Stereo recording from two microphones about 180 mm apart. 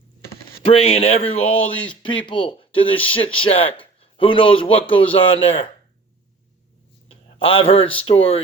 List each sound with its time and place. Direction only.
0.6 s a man's voice: 30° left (ahead or behind)
7.1 s speech: 30° left (ahead or behind)